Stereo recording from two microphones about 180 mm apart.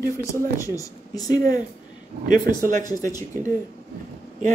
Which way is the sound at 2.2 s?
50° right (ahead or behind).